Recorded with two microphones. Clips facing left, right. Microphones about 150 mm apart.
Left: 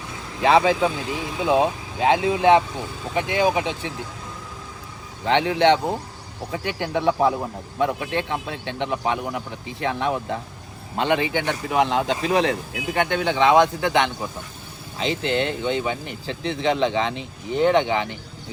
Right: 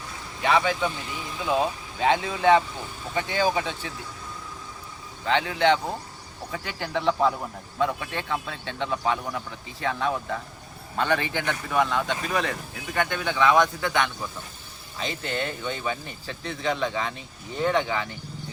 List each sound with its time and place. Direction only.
0.4 s speech: 30° left (ahead or behind)
5.2 s speech: 25° left (ahead or behind)
15.3 s speech: 20° left (ahead or behind)